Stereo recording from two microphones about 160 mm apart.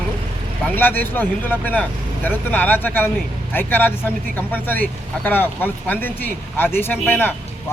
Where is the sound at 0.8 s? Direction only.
10° left (ahead or behind).